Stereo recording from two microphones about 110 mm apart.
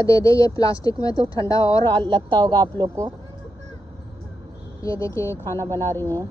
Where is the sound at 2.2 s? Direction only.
40° right (ahead or behind).